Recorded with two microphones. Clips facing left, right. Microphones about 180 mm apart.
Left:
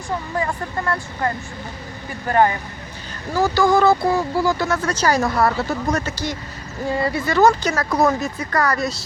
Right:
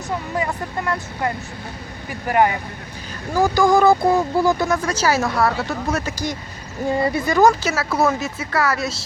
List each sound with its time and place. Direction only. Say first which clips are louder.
0.3 s speech: even; 15° right (ahead or behind)
7.3 s speech: even; 10° right (ahead or behind)